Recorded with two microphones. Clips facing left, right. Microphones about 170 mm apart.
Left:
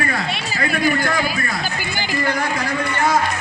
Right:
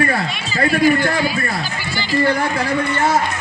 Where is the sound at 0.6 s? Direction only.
30° right (ahead or behind).